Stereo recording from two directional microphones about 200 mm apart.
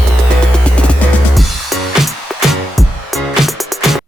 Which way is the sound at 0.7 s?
5° left (ahead or behind).